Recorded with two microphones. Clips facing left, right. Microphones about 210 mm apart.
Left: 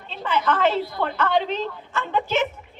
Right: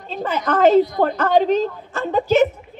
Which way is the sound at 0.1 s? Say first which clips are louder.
Right 2 dB; 40° right (ahead or behind).